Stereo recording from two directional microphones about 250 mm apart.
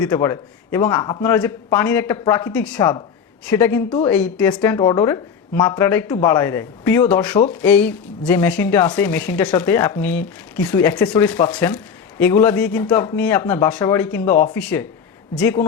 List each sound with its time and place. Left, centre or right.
0.0 s a woman's voice: centre
7.9 s a woman's voice: centre
11.3 s a woman's voice: centre